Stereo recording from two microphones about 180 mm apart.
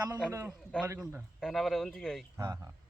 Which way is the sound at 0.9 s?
5° right (ahead or behind).